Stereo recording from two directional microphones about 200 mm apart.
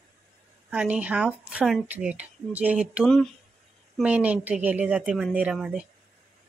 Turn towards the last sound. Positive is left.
turn(degrees=-5)  # may be behind; listen again after turning